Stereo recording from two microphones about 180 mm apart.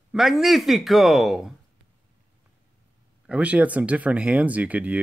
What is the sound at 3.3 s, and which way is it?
Speech, 5° right (ahead or behind).